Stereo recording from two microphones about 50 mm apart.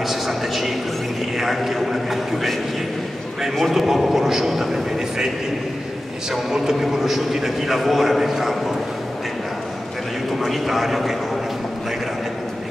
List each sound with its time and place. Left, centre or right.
0.1 s a sound: centre
1.4 s a man's voice: centre
3.5 s a man's voice: centre
6.3 s a man's voice: centre
10.4 s a man's voice: centre